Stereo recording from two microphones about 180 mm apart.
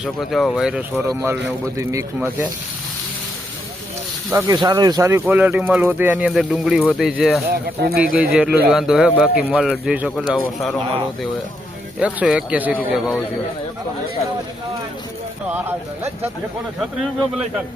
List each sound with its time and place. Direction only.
0.0 s speech: centre (ahead or behind)
4.3 s speech: 15° right (ahead or behind); by 7.4 s centre (ahead or behind)
7.5 s speech: 60° right (ahead or behind)
8.1 s speech: 5° right (ahead or behind)
11.9 s speech: 5° right (ahead or behind)